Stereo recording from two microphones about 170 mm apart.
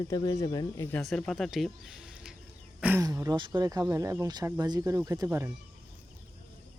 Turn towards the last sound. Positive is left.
turn(degrees=-15)  # may be behind; listen again after turning